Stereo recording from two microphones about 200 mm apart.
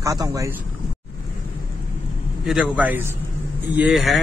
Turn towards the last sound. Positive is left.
turn(degrees=0)  # may be behind; listen again after turning